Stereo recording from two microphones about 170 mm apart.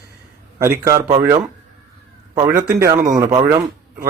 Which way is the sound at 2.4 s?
20° right (ahead or behind).